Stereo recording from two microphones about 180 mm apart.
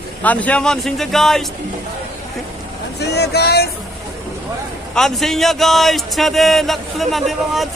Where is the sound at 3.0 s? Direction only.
65° left (ahead or behind).